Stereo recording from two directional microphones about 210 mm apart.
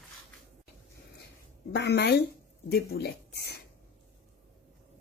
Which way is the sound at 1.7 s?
55° left (ahead or behind).